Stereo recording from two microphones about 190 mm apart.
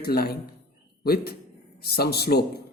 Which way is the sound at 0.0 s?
55° left (ahead or behind).